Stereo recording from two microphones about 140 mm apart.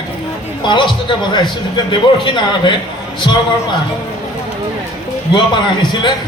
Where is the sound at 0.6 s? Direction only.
35° left (ahead or behind).